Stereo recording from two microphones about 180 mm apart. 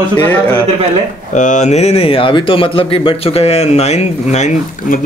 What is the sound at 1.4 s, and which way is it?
A man's voice, 45° left (ahead or behind).